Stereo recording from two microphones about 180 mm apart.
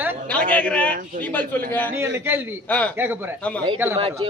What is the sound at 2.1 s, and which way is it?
Speech, 15° right (ahead or behind).